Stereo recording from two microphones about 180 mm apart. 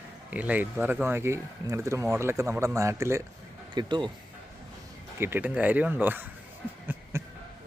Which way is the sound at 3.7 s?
25° right (ahead or behind).